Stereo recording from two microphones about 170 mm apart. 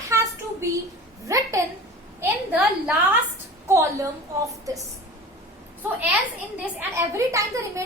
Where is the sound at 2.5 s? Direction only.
10° right (ahead or behind).